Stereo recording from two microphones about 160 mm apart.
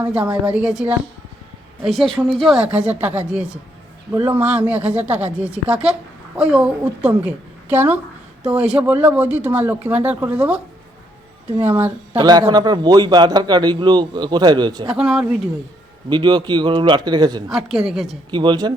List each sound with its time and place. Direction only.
0.0 s a woman's voice: 5° right (ahead or behind)
11.6 s a woman's voice: 15° right (ahead or behind)
12.1 s a man's voice: 25° right (ahead or behind)
14.8 s speech: 5° right (ahead or behind)
16.0 s a man's voice: 30° right (ahead or behind)
17.7 s speech: centre (ahead or behind)
18.3 s a man's voice: 30° right (ahead or behind)